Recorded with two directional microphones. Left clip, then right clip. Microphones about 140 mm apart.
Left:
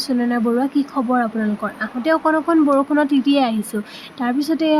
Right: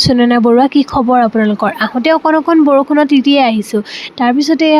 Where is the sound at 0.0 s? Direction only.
65° right (ahead or behind).